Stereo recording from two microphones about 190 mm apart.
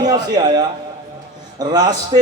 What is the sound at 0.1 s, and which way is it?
Speech, 20° right (ahead or behind).